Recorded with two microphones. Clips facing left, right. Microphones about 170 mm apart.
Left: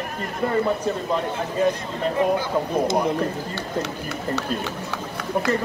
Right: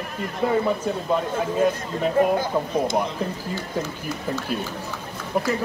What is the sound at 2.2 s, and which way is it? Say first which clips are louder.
Speech: right 1 dB; 50° right (ahead or behind).